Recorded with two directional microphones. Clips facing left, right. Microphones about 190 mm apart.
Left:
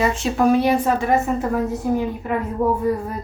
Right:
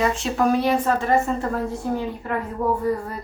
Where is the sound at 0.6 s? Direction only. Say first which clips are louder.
Left 2 dB; 15° left (ahead or behind).